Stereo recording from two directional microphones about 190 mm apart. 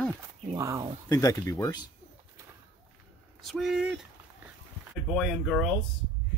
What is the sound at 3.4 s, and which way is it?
Speech, centre (ahead or behind).